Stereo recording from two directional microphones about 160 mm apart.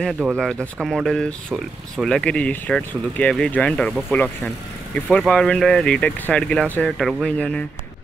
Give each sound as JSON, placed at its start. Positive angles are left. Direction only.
{"t": 0.4, "sound": "speech", "side_deg": 0}